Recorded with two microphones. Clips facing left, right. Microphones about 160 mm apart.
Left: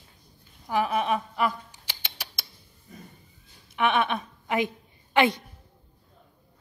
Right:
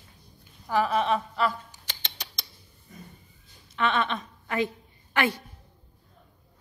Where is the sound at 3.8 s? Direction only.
15° left (ahead or behind).